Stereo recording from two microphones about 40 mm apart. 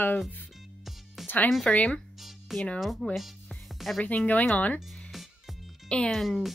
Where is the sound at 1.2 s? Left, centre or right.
Centre.